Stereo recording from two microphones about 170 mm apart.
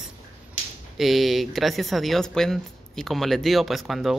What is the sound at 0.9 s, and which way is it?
Speech, centre (ahead or behind).